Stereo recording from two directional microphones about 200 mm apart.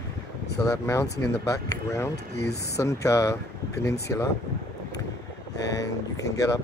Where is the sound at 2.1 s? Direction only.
55° left (ahead or behind).